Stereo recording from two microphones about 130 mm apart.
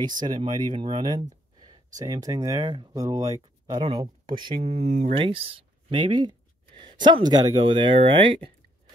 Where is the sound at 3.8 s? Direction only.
40° right (ahead or behind); by 5.1 s 70° right (ahead or behind).